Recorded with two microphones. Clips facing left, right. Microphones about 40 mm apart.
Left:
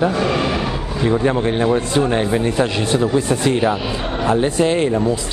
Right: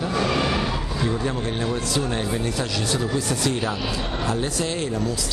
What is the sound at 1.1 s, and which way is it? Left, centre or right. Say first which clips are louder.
A man's voice: left 11 dB; left.